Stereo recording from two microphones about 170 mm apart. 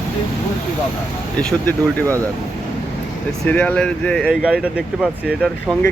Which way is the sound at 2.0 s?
15° right (ahead or behind).